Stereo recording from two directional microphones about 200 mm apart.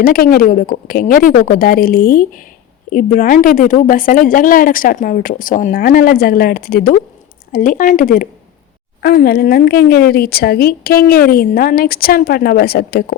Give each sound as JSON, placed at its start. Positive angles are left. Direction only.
{"t": 0.0, "sound": "speech", "side_deg": 45}